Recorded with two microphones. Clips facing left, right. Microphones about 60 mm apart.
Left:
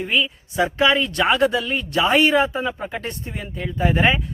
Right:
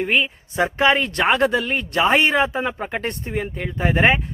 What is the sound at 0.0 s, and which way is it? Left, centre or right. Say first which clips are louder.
Speech: right 2 dB; right.